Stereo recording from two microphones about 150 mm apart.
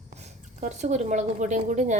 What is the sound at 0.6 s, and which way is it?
Speech, 50° right (ahead or behind).